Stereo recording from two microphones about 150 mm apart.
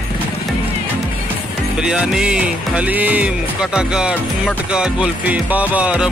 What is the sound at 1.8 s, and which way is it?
Music, 5° right (ahead or behind).